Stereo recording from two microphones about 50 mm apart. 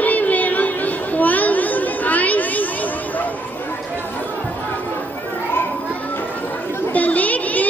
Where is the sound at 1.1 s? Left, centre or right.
Left.